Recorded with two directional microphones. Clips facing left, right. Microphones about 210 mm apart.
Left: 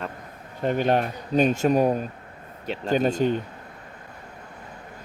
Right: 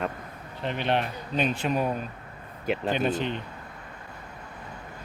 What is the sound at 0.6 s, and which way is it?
Speech, 45° left (ahead or behind).